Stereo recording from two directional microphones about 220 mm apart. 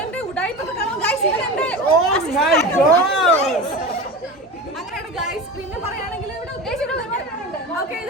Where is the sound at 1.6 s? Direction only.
5° left (ahead or behind).